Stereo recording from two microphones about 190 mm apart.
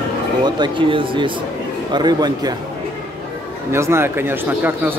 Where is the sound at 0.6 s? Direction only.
25° right (ahead or behind).